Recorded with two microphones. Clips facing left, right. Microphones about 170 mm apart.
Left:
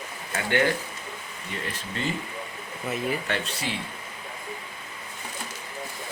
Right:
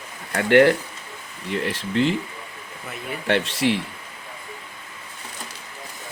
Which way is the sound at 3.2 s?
80° right.